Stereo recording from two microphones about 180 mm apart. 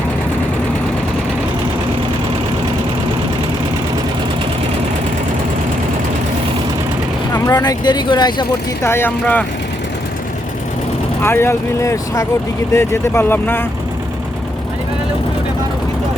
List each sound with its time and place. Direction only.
7.3 s speech: 20° left (ahead or behind)
11.2 s speech: 15° left (ahead or behind)